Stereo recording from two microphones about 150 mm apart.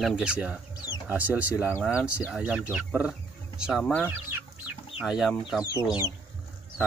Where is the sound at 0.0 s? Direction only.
5° right (ahead or behind).